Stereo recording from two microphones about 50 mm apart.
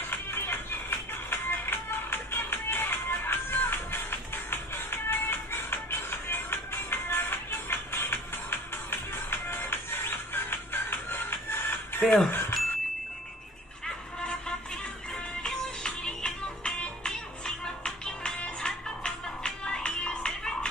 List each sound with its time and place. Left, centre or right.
0.1 s music: left
12.3 s bicycle bell: left
13.8 s music: centre